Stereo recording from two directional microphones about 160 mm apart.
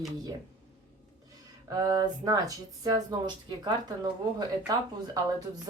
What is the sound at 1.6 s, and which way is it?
Speech, 20° right (ahead or behind).